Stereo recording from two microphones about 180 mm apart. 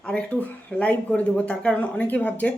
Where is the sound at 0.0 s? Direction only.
5° left (ahead or behind).